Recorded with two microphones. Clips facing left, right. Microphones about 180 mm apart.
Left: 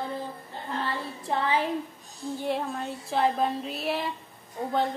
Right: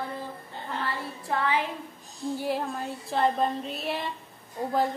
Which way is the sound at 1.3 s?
25° left (ahead or behind).